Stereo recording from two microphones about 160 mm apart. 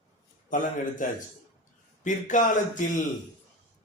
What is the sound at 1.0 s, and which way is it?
Speech, 55° left (ahead or behind).